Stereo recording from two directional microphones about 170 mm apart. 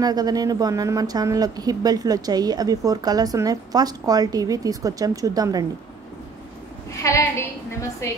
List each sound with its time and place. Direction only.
0.0 s speech: 20° right (ahead or behind)
7.0 s a woman's voice: 15° left (ahead or behind)